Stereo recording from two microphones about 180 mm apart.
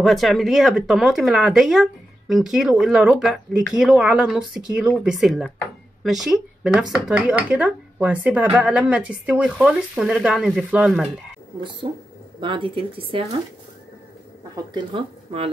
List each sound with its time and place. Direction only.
0.0 s speech: centre (ahead or behind)
11.8 s speech: 30° right (ahead or behind)